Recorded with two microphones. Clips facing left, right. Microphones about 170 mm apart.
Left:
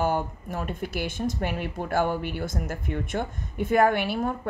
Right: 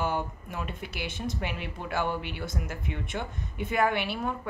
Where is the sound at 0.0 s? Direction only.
45° left (ahead or behind).